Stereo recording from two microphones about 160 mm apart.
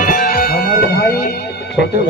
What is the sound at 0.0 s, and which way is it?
Music, 60° left (ahead or behind).